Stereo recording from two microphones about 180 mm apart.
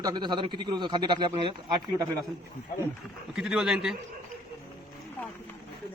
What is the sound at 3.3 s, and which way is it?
Speech, 5° right (ahead or behind).